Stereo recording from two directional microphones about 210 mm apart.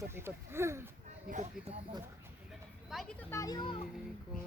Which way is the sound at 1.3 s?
30° right (ahead or behind).